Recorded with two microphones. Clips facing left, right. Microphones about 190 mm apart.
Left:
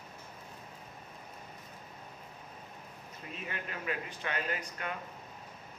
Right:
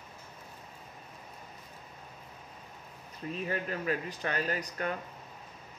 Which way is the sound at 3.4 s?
40° right (ahead or behind).